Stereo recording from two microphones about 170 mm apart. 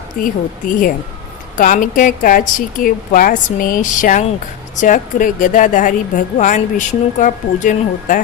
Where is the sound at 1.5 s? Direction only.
50° left (ahead or behind).